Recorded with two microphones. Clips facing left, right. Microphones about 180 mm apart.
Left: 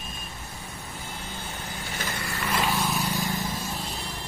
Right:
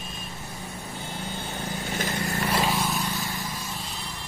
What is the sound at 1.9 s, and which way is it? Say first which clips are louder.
Vehicle: right 5 dB; 45° right (ahead or behind).